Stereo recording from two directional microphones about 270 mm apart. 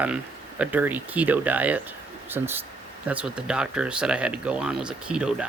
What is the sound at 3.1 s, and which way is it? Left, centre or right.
Speech, centre.